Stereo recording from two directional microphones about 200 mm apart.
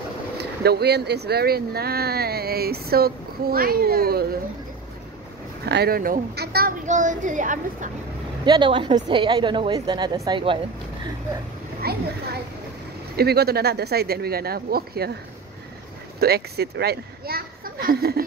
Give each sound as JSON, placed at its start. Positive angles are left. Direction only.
{"t": 0.4, "sound": "speech", "side_deg": -55}
{"t": 5.7, "sound": "speech", "side_deg": -50}
{"t": 8.5, "sound": "a woman's voice", "side_deg": -25}
{"t": 11.8, "sound": "a sound", "side_deg": -50}
{"t": 13.1, "sound": "speech", "side_deg": -55}
{"t": 16.2, "sound": "speech", "side_deg": -50}